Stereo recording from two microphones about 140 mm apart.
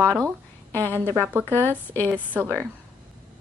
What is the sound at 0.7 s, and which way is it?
Speech, 15° left (ahead or behind).